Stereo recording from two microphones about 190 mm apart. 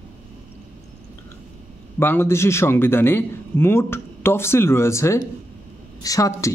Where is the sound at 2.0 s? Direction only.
10° left (ahead or behind).